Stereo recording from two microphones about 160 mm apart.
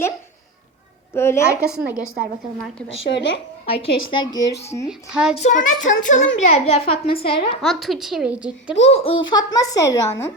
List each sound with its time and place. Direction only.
1.1 s a woman's voice: 15° left (ahead or behind)
3.1 s a woman's voice: 90° left
3.7 s a woman's voice: 30° left (ahead or behind)
4.9 s a child's voice: 5° right (ahead or behind)
5.4 s a child's voice: 50° left (ahead or behind); by 7.6 s 35° left (ahead or behind)
7.6 s a child's voice: centre (ahead or behind)
8.8 s a child's voice: 40° left (ahead or behind)
9.3 s a woman's voice: 25° left (ahead or behind)